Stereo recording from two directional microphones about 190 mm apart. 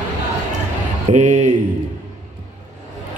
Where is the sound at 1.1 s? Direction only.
40° right (ahead or behind).